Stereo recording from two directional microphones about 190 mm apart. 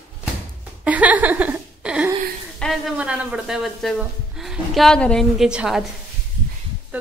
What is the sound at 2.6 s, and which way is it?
Speech, centre (ahead or behind).